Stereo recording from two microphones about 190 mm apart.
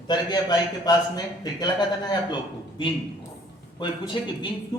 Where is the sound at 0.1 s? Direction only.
20° left (ahead or behind).